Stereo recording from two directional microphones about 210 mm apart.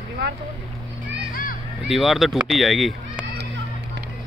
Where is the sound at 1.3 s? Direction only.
40° left (ahead or behind).